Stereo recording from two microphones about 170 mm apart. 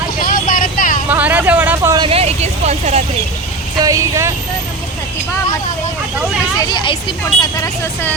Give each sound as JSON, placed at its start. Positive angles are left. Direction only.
{"t": 0.3, "sound": "vehicle", "side_deg": 55}
{"t": 1.1, "sound": "vehicle", "side_deg": -10}
{"t": 2.0, "sound": "vehicle", "side_deg": -35}
{"t": 3.8, "sound": "speech", "side_deg": -20}
{"t": 6.7, "sound": "speech", "side_deg": 25}